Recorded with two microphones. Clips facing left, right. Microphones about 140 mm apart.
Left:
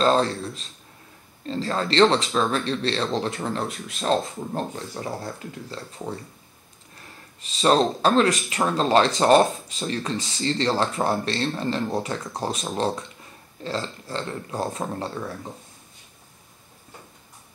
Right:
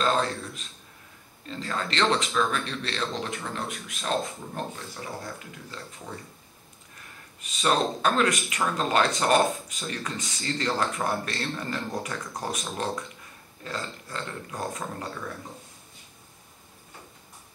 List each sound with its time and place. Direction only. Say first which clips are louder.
0.0 s speech: left 5 dB; 30° left (ahead or behind)
7.4 s speech: left 5 dB; 30° left (ahead or behind)